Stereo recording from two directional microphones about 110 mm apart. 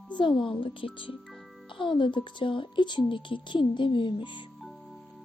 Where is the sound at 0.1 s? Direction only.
45° left (ahead or behind).